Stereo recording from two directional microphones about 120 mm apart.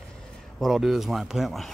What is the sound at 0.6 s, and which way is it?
Speech, centre (ahead or behind).